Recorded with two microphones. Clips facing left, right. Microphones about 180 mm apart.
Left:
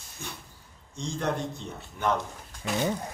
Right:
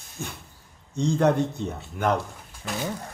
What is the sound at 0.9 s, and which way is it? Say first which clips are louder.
A man's voice: right 9 dB; 60° right (ahead or behind).